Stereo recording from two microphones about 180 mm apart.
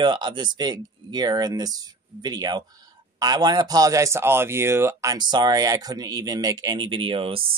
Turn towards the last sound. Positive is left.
turn(degrees=-30)  # may be behind; listen again after turning